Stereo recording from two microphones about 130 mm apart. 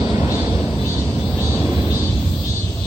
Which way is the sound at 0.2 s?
20° right (ahead or behind).